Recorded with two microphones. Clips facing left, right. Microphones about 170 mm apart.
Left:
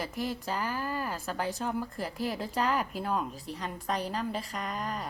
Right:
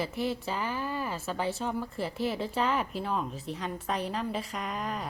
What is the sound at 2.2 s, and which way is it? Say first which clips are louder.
Speech: right 2 dB; 40° left (ahead or behind).